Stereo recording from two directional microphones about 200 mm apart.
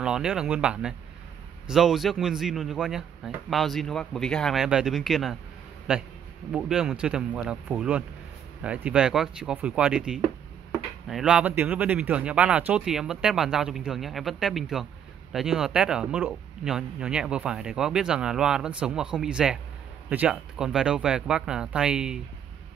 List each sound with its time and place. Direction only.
0.0 s a man's voice: 5° right (ahead or behind)